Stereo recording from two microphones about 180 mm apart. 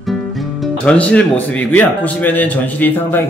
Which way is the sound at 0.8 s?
5° left (ahead or behind).